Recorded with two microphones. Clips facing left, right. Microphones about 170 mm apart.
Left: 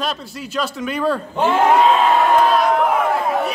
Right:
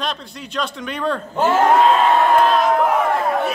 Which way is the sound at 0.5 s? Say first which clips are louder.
Left 3 dB; 5° left (ahead or behind).